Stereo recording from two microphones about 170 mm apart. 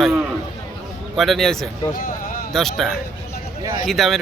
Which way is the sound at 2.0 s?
55° left (ahead or behind).